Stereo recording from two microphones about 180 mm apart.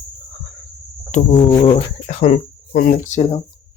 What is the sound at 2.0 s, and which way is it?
Speech, 40° left (ahead or behind).